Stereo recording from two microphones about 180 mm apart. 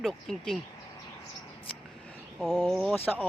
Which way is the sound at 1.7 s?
Centre (ahead or behind).